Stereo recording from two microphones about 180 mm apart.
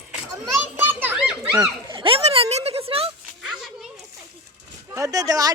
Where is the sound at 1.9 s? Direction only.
30° right (ahead or behind).